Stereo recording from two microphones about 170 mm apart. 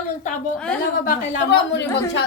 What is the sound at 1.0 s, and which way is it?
Speech, 75° left (ahead or behind).